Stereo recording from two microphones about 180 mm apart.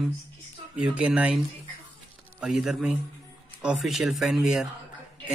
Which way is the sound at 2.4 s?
5° right (ahead or behind).